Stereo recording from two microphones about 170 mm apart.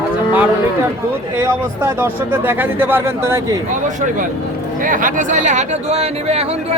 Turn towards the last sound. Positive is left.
turn(degrees=-35)  # may be behind; listen again after turning